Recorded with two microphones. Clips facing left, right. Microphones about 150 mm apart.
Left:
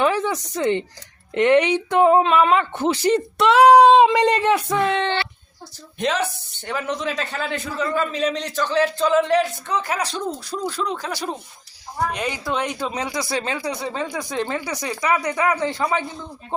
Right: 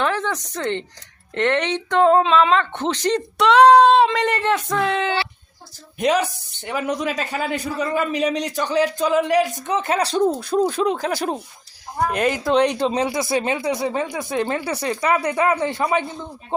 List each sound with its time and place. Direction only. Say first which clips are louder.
0.0 s a sound: left 2 dB; 10° left (ahead or behind)
1.3 s speech: left 4 dB; 10° left (ahead or behind)
4.8 s a man's voice: even; centre (ahead or behind); by 10.2 s 30° right (ahead or behind)
10.2 s speech: right 8 dB; 55° right (ahead or behind)
12.9 s speech: right 5 dB; 25° right (ahead or behind)
14.6 s speech: right 3 dB; 30° right (ahead or behind)